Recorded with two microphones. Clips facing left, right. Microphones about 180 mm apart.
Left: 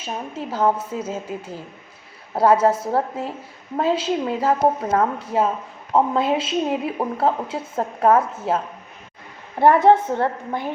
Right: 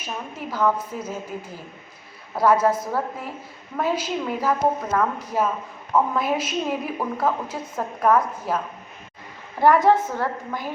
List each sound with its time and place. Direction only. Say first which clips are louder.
0.0 s a woman's voice: left 3 dB; 30° left (ahead or behind)